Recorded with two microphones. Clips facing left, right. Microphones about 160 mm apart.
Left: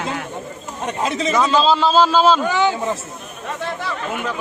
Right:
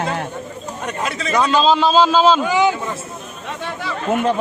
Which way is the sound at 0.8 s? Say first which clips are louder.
Left 4 dB; 20° left (ahead or behind).